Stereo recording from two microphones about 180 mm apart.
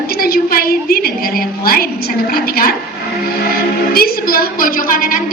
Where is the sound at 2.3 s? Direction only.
55° left (ahead or behind).